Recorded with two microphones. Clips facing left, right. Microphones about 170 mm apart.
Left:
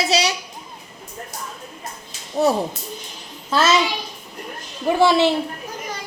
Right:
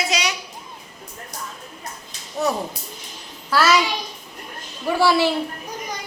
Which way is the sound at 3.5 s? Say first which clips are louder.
Even; 25° left (ahead or behind).